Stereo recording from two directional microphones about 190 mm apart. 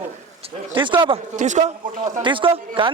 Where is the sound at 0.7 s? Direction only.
25° right (ahead or behind).